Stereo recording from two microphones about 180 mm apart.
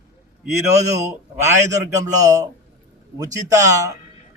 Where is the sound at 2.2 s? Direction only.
20° right (ahead or behind).